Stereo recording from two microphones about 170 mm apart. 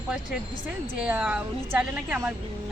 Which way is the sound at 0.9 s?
10° right (ahead or behind).